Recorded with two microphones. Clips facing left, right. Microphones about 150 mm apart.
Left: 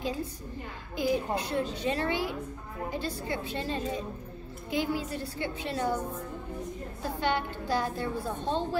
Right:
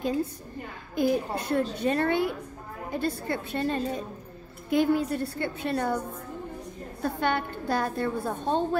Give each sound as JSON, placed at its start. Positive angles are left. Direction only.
{"t": 0.9, "sound": "a child's voice", "side_deg": -50}
{"t": 7.0, "sound": "a woman's voice", "side_deg": -55}